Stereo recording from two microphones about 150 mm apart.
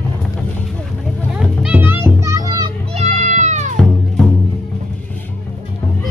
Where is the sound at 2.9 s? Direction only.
50° right (ahead or behind).